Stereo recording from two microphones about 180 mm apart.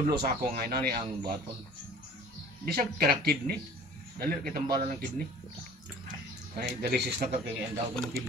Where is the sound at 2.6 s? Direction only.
55° right (ahead or behind).